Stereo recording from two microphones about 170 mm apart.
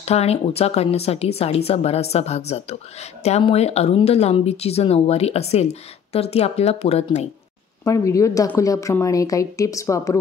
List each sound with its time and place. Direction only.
0.0 s speech: 40° left (ahead or behind)
7.8 s a woman's voice: 20° left (ahead or behind)